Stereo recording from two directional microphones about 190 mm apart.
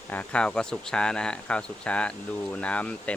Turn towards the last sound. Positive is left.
turn(degrees=5)  # may be behind; listen again after turning